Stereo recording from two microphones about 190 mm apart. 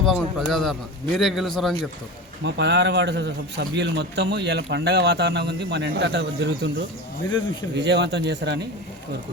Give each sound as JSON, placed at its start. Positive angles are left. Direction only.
{"t": 0.0, "sound": "a man's voice", "side_deg": 0}
{"t": 2.4, "sound": "a man's voice", "side_deg": -65}
{"t": 7.8, "sound": "a man's voice", "side_deg": -65}